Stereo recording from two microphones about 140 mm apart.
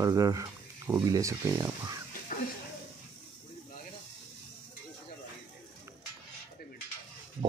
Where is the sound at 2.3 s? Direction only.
80° left.